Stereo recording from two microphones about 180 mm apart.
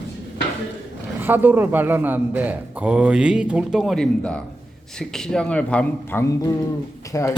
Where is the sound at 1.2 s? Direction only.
10° right (ahead or behind).